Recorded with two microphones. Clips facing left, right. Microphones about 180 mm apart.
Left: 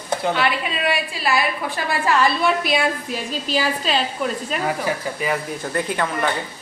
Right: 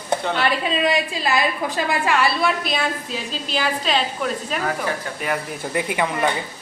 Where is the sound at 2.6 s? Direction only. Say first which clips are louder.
Left 3 dB; 10° left (ahead or behind).